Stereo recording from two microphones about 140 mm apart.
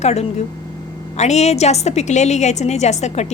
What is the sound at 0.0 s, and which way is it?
A woman's voice, 50° left (ahead or behind).